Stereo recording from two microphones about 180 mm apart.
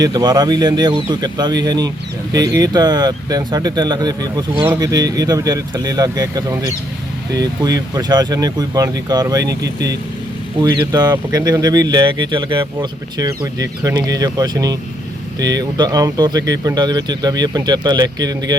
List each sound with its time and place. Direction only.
0.0 s speech: 20° right (ahead or behind)
10.6 s speech: 25° right (ahead or behind)